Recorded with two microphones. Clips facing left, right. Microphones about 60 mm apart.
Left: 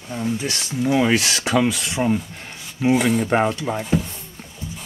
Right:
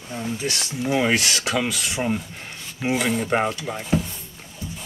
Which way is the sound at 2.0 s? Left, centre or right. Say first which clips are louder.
Left 6 dB; centre.